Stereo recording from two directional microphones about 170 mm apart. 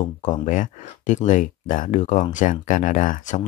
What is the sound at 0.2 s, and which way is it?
Speech, 50° left (ahead or behind).